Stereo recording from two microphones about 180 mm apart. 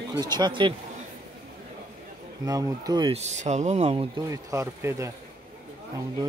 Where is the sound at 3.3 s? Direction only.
40° right (ahead or behind).